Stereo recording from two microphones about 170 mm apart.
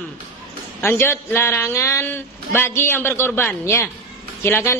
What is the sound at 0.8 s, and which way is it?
A man's voice, 15° left (ahead or behind).